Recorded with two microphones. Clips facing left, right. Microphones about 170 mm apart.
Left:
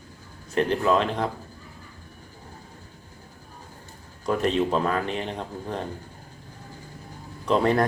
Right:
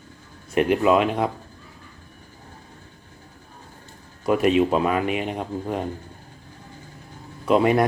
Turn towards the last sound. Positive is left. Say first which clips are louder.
# right 3 dB
turn(degrees=-10)  # may be behind; listen again after turning